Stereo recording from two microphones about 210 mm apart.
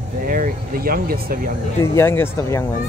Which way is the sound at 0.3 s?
45° right (ahead or behind).